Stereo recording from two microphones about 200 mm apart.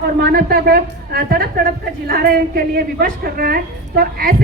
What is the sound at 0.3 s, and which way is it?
A woman's voice, 50° right (ahead or behind).